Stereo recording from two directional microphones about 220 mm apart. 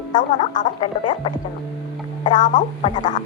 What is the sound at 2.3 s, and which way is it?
Speech, 35° left (ahead or behind).